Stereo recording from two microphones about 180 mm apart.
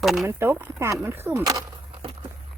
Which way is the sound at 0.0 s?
Centre (ahead or behind).